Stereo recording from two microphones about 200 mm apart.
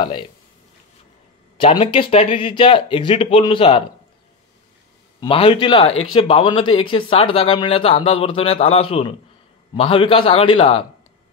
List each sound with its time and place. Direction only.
1.6 s speech: 25° left (ahead or behind)
5.2 s speech: 25° left (ahead or behind)